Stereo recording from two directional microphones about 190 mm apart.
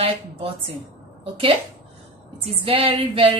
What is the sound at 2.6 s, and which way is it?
Speech, 30° right (ahead or behind).